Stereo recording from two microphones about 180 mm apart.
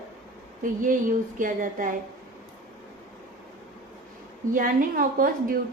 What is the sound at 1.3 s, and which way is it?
Speech, 50° right (ahead or behind).